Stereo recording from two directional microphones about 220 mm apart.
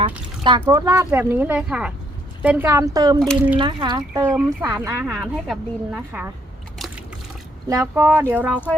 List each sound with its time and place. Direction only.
0.0 s speech: 20° right (ahead or behind)
6.7 s liquid: centre (ahead or behind)
7.7 s speech: 10° right (ahead or behind)